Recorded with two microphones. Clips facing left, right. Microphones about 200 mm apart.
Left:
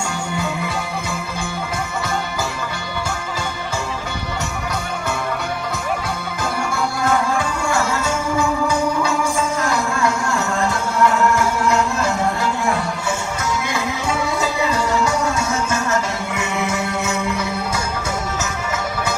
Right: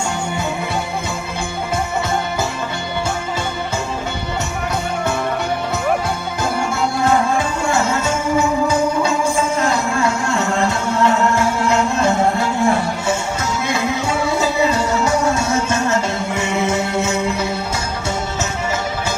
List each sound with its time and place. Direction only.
7.0 s music: 25° right (ahead or behind)
14.3 s music: 25° right (ahead or behind)